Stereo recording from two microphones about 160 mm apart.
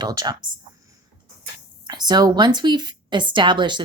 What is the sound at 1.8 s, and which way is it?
Speech, 25° right (ahead or behind).